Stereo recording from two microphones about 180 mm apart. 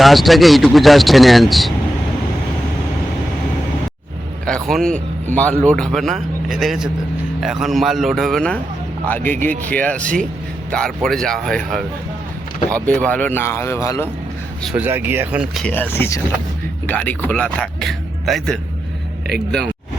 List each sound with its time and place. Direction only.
0.0 s speech: centre (ahead or behind)
4.4 s speech: 5° left (ahead or behind)
14.6 s speech: 5° right (ahead or behind)
15.6 s a man's voice: 10° left (ahead or behind)